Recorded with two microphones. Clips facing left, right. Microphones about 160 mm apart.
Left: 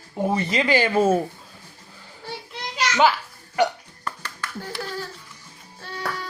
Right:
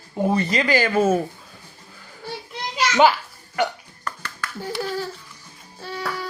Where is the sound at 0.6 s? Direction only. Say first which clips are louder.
Left 2 dB; 25° left (ahead or behind).